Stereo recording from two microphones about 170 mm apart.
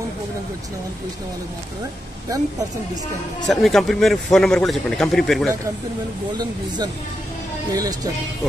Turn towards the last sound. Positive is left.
turn(degrees=-20)  # may be behind; listen again after turning